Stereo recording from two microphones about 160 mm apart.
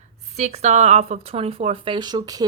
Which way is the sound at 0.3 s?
45° right (ahead or behind).